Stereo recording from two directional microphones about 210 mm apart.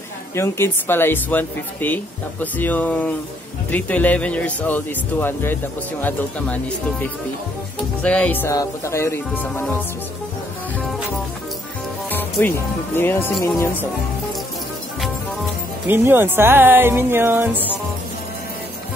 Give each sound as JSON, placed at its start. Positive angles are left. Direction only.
{"t": 0.4, "sound": "speech", "side_deg": 10}
{"t": 12.1, "sound": "speech", "side_deg": 10}
{"t": 15.9, "sound": "speech", "side_deg": -10}